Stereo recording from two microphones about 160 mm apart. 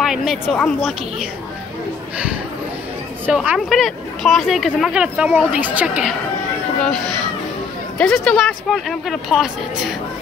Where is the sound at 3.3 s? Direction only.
5° right (ahead or behind).